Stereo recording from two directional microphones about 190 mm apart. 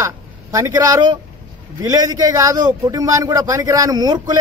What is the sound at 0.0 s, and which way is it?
A man's voice, 15° right (ahead or behind).